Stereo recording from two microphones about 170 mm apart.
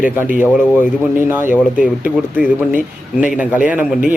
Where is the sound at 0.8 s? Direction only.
15° right (ahead or behind).